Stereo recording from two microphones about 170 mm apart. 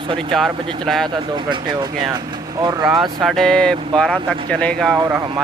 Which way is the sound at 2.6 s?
25° right (ahead or behind).